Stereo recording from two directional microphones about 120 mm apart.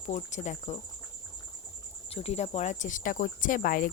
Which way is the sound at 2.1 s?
60° left (ahead or behind).